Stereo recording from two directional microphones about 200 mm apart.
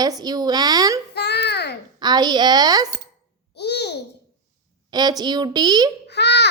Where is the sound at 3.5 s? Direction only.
55° left (ahead or behind).